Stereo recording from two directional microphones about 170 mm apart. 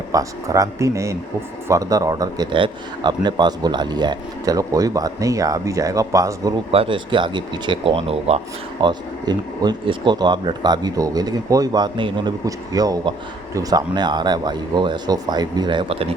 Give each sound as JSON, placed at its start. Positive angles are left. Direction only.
{"t": 0.1, "sound": "speech", "side_deg": -20}
{"t": 6.7, "sound": "speech", "side_deg": -30}